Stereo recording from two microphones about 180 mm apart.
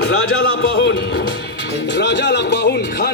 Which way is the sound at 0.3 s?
90° left.